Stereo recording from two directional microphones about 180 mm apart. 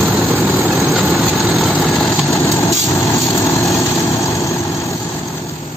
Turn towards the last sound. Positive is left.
turn(degrees=15)  # may be behind; listen again after turning